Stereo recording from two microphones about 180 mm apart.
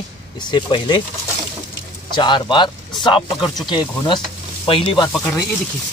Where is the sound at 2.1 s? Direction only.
25° left (ahead or behind).